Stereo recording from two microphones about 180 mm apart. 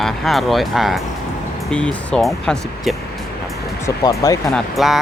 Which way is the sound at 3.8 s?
20° left (ahead or behind).